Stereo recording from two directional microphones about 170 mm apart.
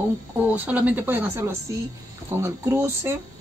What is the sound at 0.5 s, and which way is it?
Speech, 10° right (ahead or behind).